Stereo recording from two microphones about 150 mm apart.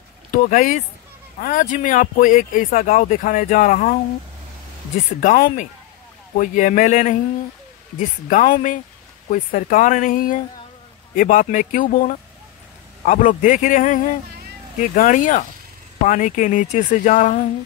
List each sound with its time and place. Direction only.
0.3 s speech: 65° left (ahead or behind)
5.2 s speech: 65° left (ahead or behind)
8.3 s speech: 60° left (ahead or behind)